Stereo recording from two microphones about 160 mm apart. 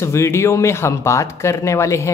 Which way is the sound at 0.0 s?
15° left (ahead or behind).